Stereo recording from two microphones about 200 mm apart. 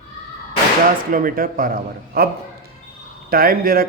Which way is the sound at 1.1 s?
45° right (ahead or behind).